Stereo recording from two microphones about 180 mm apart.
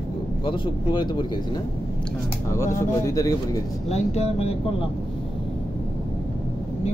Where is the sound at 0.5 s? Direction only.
25° left (ahead or behind).